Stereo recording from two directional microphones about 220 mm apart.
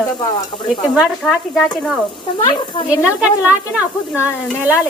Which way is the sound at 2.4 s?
20° left (ahead or behind).